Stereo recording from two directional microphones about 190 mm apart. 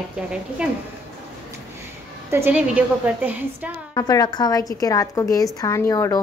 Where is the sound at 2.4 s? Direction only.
5° right (ahead or behind).